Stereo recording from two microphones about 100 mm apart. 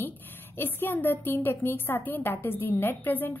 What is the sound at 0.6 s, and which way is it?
A woman's voice, 20° left (ahead or behind).